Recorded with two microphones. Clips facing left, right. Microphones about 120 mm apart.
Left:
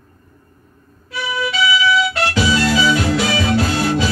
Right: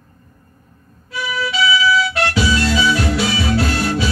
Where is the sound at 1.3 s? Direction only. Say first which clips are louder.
Even; 20° left (ahead or behind).